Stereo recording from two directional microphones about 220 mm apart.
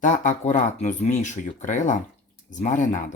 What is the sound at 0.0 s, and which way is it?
Speech, 35° left (ahead or behind).